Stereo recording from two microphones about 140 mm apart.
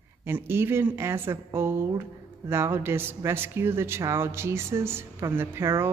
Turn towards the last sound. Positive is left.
turn(degrees=-20)  # may be behind; listen again after turning